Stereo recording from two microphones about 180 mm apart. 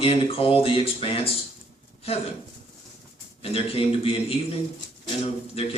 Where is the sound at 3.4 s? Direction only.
35° left (ahead or behind).